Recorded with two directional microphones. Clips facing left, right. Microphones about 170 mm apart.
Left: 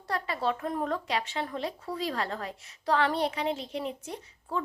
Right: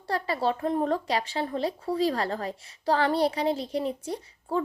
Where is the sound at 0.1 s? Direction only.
35° right (ahead or behind).